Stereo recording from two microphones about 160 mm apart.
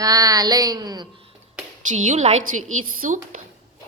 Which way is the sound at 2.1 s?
45° right (ahead or behind).